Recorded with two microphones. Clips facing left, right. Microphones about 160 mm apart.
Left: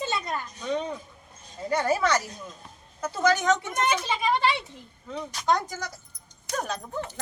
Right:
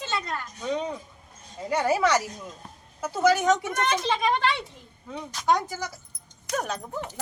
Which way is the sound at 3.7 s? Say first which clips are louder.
Right 1 dB; 10° left (ahead or behind).